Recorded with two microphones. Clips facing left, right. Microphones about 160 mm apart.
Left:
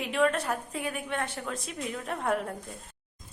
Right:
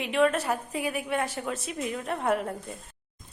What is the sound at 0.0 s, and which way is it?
Speech, centre (ahead or behind).